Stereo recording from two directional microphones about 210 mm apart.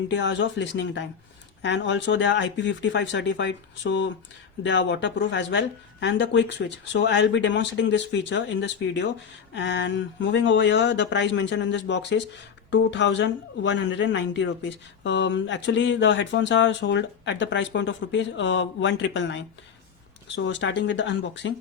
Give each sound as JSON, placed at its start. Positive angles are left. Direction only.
{"t": 0.1, "sound": "speech", "side_deg": 60}